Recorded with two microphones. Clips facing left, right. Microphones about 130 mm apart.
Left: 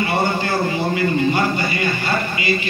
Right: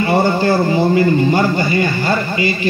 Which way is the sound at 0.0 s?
35° right (ahead or behind).